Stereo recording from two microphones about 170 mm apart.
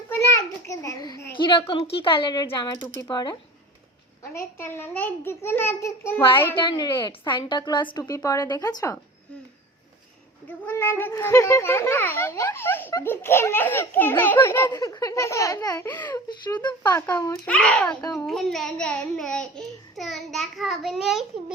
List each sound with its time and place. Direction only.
0.1 s a sound: 15° left (ahead or behind)
1.4 s a woman's voice: 30° left (ahead or behind)
4.2 s a child's voice: 15° left (ahead or behind)
6.6 s a woman's voice: 25° left (ahead or behind)
10.7 s a child's voice: 15° left (ahead or behind)
17.1 s a child's voice: 10° left (ahead or behind)